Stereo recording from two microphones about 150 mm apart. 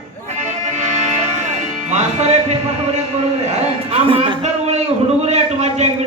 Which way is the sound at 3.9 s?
40° right (ahead or behind).